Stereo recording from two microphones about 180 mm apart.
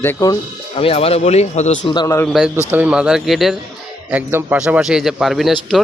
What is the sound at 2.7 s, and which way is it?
Speech, 5° right (ahead or behind).